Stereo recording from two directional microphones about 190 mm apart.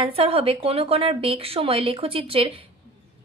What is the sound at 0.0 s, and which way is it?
A woman's voice, 30° right (ahead or behind).